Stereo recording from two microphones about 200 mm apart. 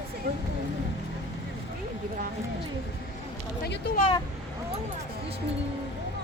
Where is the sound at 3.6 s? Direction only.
50° left (ahead or behind).